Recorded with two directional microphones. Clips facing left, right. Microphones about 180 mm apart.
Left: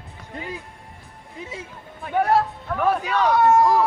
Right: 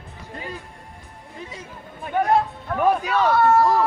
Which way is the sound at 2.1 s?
5° left (ahead or behind).